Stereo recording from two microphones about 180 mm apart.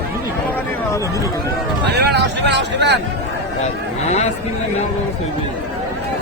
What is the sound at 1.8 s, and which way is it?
Vehicle, 70° right (ahead or behind).